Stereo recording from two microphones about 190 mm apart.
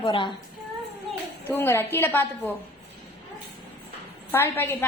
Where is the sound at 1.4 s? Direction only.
10° left (ahead or behind).